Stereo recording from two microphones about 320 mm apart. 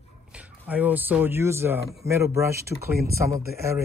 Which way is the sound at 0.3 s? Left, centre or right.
Centre.